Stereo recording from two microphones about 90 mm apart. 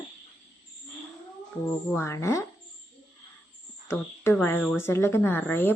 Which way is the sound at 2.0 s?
35° left (ahead or behind).